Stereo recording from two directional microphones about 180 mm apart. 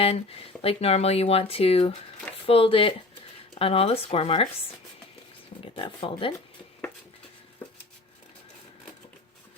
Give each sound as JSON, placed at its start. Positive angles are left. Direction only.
{"t": 0.0, "sound": "speech", "side_deg": 35}
{"t": 5.7, "sound": "speech", "side_deg": 30}